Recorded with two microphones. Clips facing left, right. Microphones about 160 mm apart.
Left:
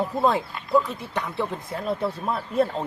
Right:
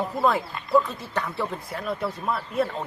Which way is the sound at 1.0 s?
15° left (ahead or behind).